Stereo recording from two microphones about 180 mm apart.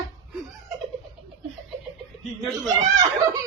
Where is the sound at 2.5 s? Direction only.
20° right (ahead or behind).